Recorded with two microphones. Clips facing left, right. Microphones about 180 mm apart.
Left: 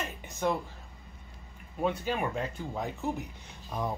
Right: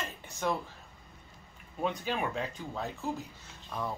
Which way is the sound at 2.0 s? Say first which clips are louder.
Left 2 dB; 5° left (ahead or behind).